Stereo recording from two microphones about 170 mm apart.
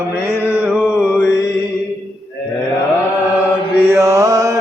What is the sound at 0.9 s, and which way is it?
Mantra, 5° right (ahead or behind).